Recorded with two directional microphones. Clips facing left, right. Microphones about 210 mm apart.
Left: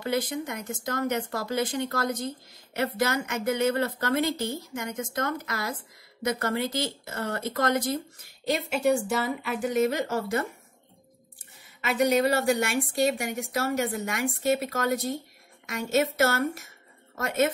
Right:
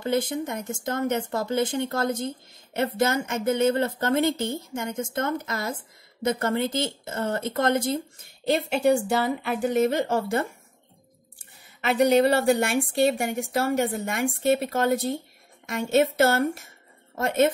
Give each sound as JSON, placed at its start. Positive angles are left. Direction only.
{"t": 0.0, "sound": "a woman's voice", "side_deg": -25}
{"t": 11.3, "sound": "a sound", "side_deg": -30}
{"t": 12.7, "sound": "speech", "side_deg": -30}
{"t": 15.9, "sound": "speech", "side_deg": -30}